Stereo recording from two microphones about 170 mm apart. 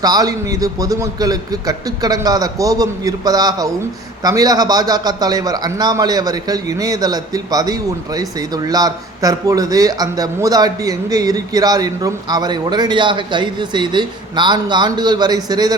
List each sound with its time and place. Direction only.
0.0 s a man's voice: 20° right (ahead or behind)